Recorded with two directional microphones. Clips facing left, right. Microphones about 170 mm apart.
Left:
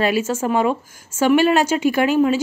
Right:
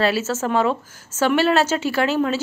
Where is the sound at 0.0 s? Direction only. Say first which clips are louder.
Left 1 dB; 15° left (ahead or behind).